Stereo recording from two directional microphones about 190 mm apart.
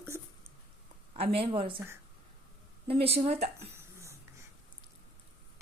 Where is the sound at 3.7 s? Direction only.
15° right (ahead or behind).